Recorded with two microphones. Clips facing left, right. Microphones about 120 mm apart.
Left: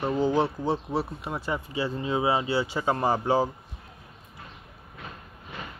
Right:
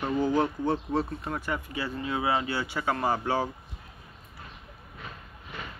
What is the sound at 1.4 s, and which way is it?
Speech, 25° left (ahead or behind).